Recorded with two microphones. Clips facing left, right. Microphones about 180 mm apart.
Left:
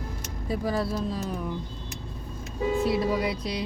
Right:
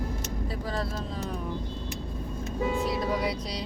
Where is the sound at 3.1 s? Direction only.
5° left (ahead or behind).